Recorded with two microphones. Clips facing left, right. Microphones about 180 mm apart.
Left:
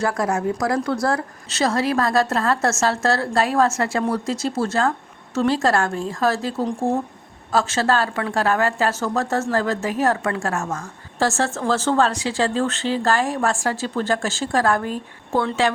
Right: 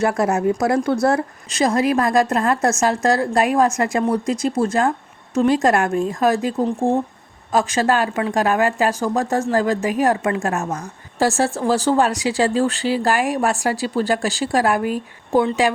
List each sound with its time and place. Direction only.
0.0 s speech: 25° right (ahead or behind)